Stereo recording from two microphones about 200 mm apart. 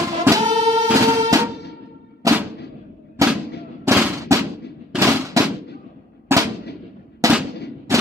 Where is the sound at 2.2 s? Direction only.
15° right (ahead or behind).